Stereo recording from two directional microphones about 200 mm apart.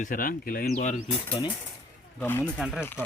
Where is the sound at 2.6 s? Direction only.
Centre (ahead or behind).